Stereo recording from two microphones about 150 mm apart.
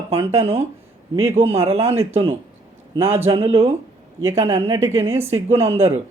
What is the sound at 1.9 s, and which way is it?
Speech, 15° right (ahead or behind).